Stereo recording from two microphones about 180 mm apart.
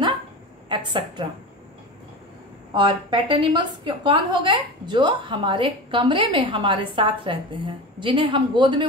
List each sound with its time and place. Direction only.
0.7 s a woman's voice: 25° right (ahead or behind)
2.7 s a woman's voice: 25° right (ahead or behind)